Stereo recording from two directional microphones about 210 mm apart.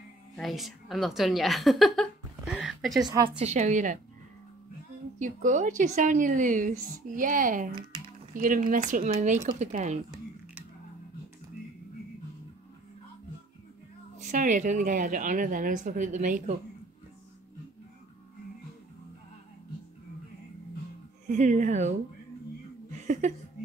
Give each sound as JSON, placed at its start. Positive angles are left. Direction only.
{"t": 0.4, "sound": "a woman's voice", "side_deg": 0}
{"t": 3.0, "sound": "a woman's voice", "side_deg": -20}
{"t": 3.3, "sound": "a woman's voice", "side_deg": -30}
{"t": 5.2, "sound": "a woman's voice", "side_deg": -35}
{"t": 14.1, "sound": "a woman's voice", "side_deg": -35}
{"t": 21.3, "sound": "a woman's voice", "side_deg": -35}